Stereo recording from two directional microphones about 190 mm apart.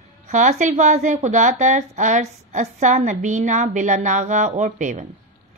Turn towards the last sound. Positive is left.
turn(degrees=-40)  # may be behind; listen again after turning